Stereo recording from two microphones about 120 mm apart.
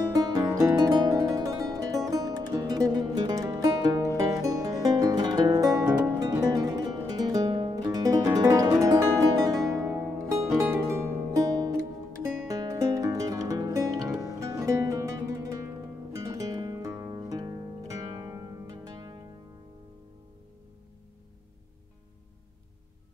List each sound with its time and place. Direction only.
0.1 s music: 30° right (ahead or behind)